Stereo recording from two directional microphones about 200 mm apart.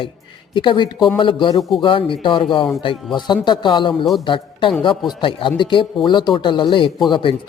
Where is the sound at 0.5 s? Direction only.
25° left (ahead or behind).